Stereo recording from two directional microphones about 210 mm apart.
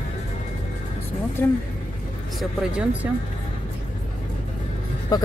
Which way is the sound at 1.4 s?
10° left (ahead or behind).